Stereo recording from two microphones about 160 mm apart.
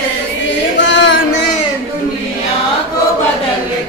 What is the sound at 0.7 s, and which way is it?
Chant, 90° left.